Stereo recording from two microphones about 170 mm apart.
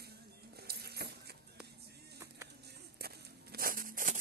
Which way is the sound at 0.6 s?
70° right (ahead or behind).